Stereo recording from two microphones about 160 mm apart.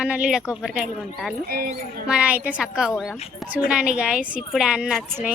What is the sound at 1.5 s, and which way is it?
Speech, 65° right (ahead or behind).